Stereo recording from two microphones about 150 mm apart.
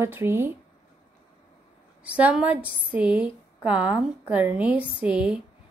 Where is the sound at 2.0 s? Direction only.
10° right (ahead or behind).